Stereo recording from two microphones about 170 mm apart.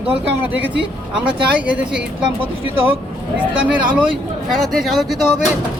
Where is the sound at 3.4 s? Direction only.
10° right (ahead or behind).